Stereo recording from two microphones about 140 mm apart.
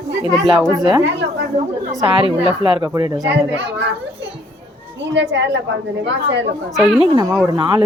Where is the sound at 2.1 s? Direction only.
40° right (ahead or behind).